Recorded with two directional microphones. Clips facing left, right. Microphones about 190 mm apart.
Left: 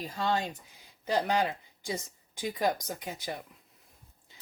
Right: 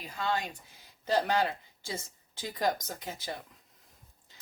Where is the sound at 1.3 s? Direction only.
15° left (ahead or behind).